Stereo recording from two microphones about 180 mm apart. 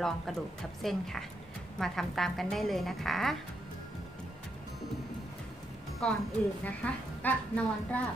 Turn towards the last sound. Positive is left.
turn(degrees=10)  # may be behind; listen again after turning